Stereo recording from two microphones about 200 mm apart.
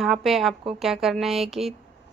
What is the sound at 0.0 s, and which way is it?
A woman's voice, centre (ahead or behind).